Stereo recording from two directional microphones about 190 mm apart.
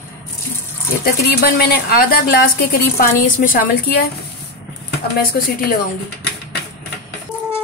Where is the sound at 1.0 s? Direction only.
50° left (ahead or behind).